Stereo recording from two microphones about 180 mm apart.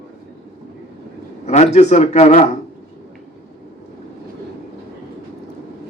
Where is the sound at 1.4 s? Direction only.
40° left (ahead or behind).